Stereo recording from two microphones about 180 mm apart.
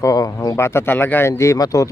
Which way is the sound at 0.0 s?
20° left (ahead or behind).